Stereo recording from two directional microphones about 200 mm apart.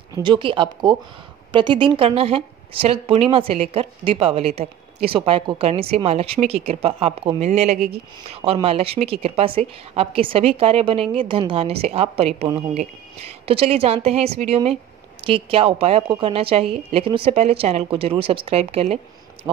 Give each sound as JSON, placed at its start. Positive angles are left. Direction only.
{"t": 0.1, "sound": "a woman's voice", "side_deg": -25}
{"t": 19.4, "sound": "speech", "side_deg": -15}